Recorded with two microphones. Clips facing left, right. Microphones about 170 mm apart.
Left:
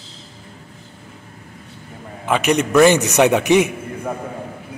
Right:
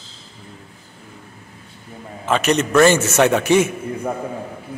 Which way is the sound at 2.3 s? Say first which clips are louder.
Left 1 dB; 10° left (ahead or behind).